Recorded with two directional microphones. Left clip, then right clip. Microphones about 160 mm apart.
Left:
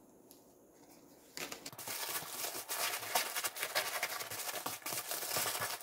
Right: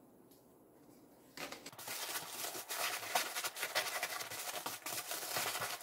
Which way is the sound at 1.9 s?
15° left (ahead or behind).